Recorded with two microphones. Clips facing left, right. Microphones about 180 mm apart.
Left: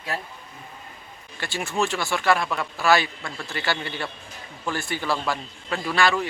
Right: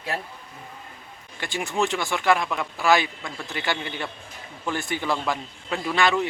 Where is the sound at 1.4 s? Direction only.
15° right (ahead or behind).